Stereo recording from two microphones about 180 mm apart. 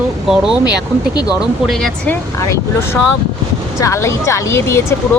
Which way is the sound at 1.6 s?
Centre (ahead or behind).